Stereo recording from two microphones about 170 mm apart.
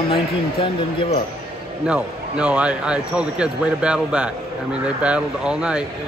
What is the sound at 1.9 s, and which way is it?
Speech, 5° right (ahead or behind).